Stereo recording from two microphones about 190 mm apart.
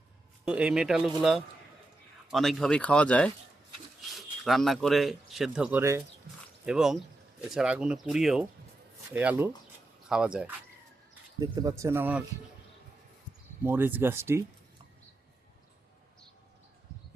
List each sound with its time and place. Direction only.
0.4 s speech: 5° right (ahead or behind)
11.3 s speech: 20° right (ahead or behind)
13.7 s speech: 10° right (ahead or behind)